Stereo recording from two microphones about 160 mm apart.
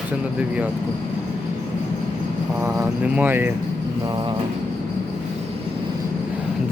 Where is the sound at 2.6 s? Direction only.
10° right (ahead or behind).